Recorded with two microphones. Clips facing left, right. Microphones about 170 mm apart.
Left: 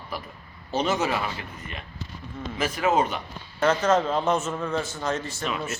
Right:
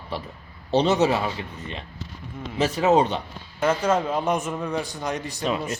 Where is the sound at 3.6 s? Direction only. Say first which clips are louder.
Even; 10° right (ahead or behind).